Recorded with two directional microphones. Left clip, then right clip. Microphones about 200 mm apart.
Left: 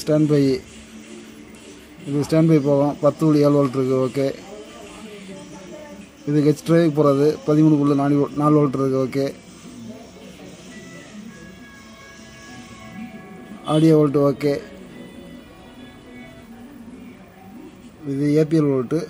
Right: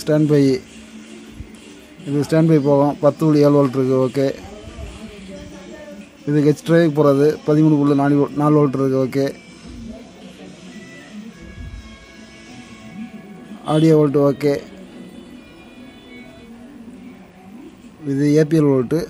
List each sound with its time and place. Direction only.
0.0 s speech: 15° right (ahead or behind)
2.1 s speech: 10° right (ahead or behind)
6.2 s speech: 10° right (ahead or behind)
13.7 s speech: 10° right (ahead or behind)
18.0 s speech: 20° right (ahead or behind)